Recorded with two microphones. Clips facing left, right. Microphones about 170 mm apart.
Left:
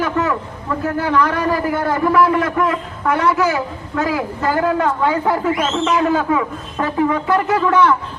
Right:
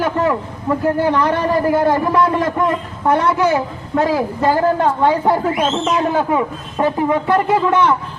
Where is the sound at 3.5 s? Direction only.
30° right (ahead or behind).